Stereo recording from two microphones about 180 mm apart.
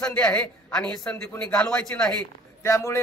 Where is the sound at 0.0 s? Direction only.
10° left (ahead or behind).